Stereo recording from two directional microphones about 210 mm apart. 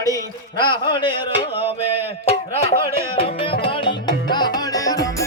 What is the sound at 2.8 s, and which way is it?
Music, 25° left (ahead or behind).